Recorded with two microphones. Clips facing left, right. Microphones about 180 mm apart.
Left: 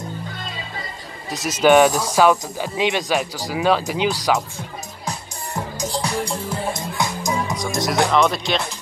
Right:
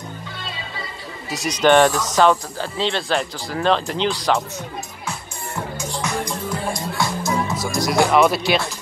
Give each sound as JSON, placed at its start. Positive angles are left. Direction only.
{"t": 1.3, "sound": "speech", "side_deg": 0}
{"t": 5.8, "sound": "music", "side_deg": 35}
{"t": 7.5, "sound": "speech", "side_deg": 0}